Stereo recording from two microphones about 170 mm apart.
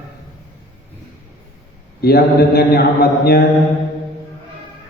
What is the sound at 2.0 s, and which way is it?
A man's voice, 65° left (ahead or behind).